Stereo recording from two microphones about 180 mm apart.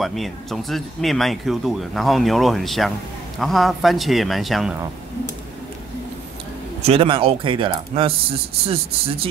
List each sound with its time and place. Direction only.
0.0 s speech: centre (ahead or behind)
6.8 s speech: 30° right (ahead or behind)